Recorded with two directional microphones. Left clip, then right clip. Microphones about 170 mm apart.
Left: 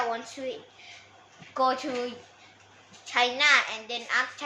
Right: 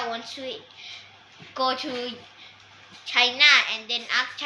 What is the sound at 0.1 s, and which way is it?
Speech, 20° left (ahead or behind).